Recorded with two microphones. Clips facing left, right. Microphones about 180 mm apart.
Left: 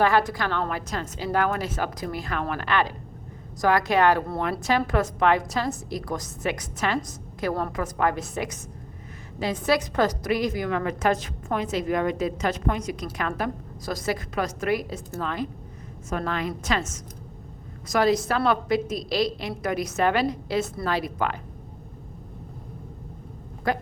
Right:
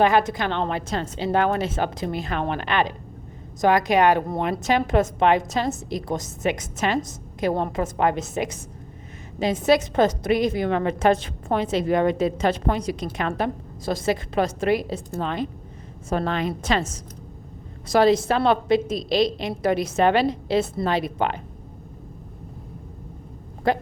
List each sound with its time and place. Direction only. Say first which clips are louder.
0.0 s a woman's voice: right 3 dB; 20° right (ahead or behind)
23.7 s a woman's voice: right 4 dB; 25° right (ahead or behind)